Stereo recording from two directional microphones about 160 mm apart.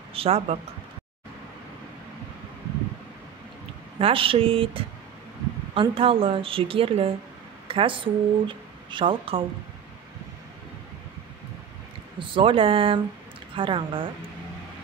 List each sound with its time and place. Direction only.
0.1 s speech: 40° right (ahead or behind)
4.0 s a woman's voice: 35° right (ahead or behind)
12.2 s a woman's voice: 35° right (ahead or behind)